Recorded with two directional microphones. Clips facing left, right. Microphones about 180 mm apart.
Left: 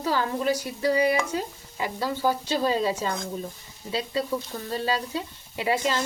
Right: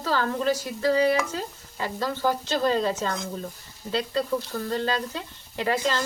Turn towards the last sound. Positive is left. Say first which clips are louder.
# even
turn(degrees=10)  # may be behind; listen again after turning